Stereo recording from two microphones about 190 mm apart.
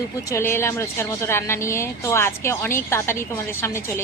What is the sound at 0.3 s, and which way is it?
A woman's voice, 15° left (ahead or behind).